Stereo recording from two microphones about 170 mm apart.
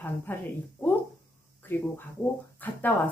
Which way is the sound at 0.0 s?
10° left (ahead or behind).